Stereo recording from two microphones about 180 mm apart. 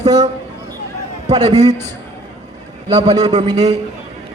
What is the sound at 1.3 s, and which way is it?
Speech, 35° right (ahead or behind).